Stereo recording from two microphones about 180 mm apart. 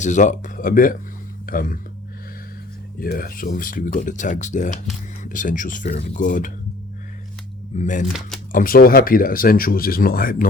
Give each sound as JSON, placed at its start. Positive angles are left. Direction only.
{"t": 0.0, "sound": "speech", "side_deg": 45}
{"t": 3.0, "sound": "speech", "side_deg": 55}
{"t": 7.8, "sound": "speech", "side_deg": 45}